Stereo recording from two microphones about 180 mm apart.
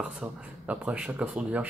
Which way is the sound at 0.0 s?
5° right (ahead or behind).